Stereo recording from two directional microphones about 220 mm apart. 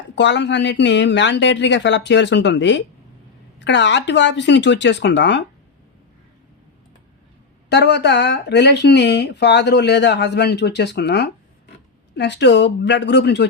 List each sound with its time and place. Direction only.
0.2 s speech: 55° left (ahead or behind)
7.7 s speech: 50° left (ahead or behind)